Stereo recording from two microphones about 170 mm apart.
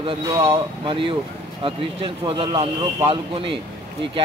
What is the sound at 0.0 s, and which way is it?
Speech, 30° right (ahead or behind).